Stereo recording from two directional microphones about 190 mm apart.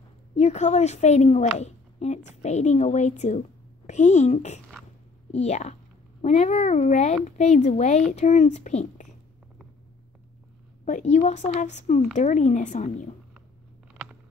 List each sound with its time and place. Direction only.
0.4 s a woman's voice: 35° left (ahead or behind)
10.9 s a woman's voice: 40° left (ahead or behind)